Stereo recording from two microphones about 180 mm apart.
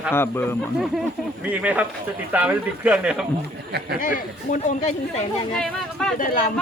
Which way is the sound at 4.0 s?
50° left (ahead or behind).